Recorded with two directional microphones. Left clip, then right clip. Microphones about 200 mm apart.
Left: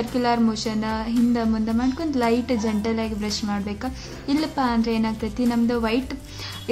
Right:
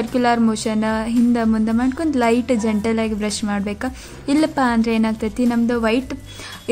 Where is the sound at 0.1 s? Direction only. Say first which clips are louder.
Right 5 dB; 30° right (ahead or behind).